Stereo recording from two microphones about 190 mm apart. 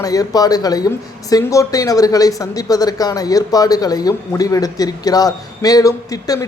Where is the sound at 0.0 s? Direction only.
20° left (ahead or behind).